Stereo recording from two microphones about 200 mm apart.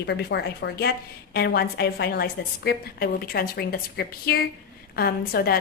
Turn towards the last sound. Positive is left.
turn(degrees=50)  # may be behind; listen again after turning